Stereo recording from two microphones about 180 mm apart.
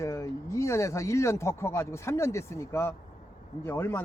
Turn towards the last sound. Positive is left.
turn(degrees=15)  # may be behind; listen again after turning